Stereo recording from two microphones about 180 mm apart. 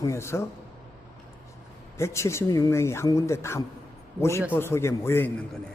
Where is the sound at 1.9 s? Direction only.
15° left (ahead or behind).